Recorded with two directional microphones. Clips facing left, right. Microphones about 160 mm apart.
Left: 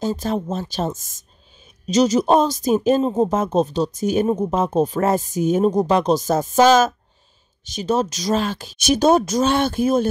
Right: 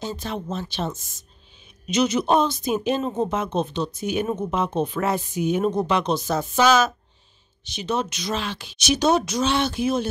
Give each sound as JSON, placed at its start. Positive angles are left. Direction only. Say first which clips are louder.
{"t": 0.0, "sound": "speech", "louder": "left 7 dB", "side_deg": 45}